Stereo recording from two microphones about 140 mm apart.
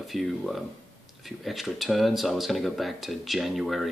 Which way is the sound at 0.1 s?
Centre (ahead or behind).